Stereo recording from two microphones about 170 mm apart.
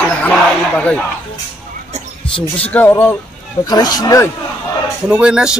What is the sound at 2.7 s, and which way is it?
Speech, 10° left (ahead or behind).